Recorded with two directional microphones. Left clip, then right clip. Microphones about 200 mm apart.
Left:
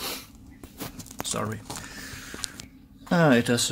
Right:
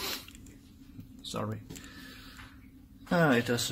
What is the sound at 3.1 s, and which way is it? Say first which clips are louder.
Speech: left 5 dB; 15° left (ahead or behind).